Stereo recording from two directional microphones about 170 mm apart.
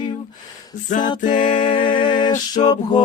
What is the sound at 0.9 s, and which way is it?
Music, 45° left (ahead or behind).